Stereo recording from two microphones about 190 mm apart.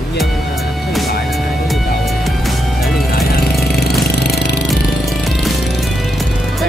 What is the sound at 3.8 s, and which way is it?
Engine, 55° left (ahead or behind).